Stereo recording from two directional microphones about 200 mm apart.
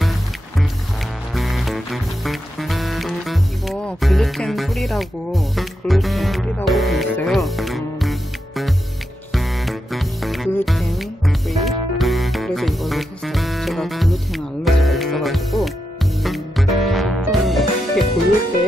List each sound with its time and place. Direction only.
1.3 s music: centre (ahead or behind)